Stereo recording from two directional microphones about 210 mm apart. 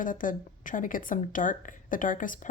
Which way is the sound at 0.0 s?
40° left (ahead or behind).